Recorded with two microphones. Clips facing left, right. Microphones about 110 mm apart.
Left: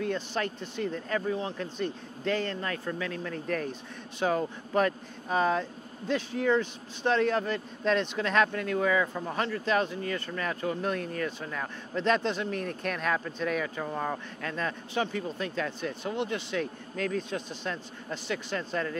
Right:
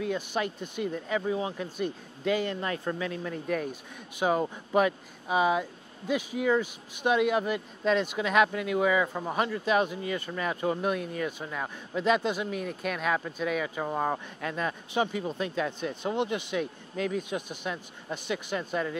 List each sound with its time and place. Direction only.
0.0 s speech: 10° right (ahead or behind)
13.8 s speech: 20° right (ahead or behind)